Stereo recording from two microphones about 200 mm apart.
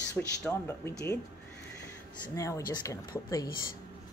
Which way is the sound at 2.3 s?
15° left (ahead or behind).